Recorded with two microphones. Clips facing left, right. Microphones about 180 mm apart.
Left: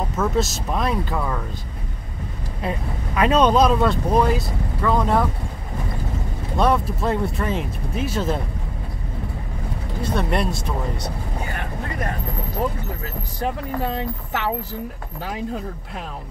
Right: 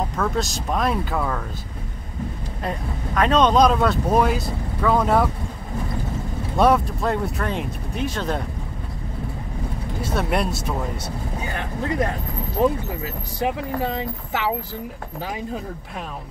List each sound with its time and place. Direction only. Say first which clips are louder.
0.1 s speech: left 2 dB; 5° left (ahead or behind)
2.6 s speech: left 1 dB; 5° left (ahead or behind)
6.6 s speech: right 2 dB; centre (ahead or behind)
10.0 s speech: left 1 dB; 5° right (ahead or behind)
12.6 s speech: right 6 dB; 20° right (ahead or behind)